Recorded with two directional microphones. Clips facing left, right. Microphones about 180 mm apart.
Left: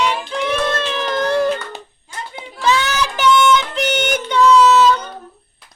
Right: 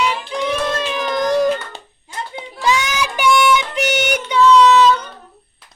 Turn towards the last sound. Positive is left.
turn(degrees=5)  # may be behind; listen again after turning